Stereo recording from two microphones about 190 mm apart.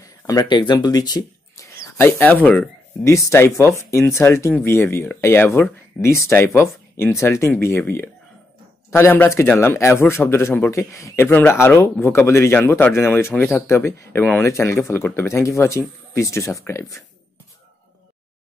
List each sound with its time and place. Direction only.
0.0 s a man's voice: 20° left (ahead or behind)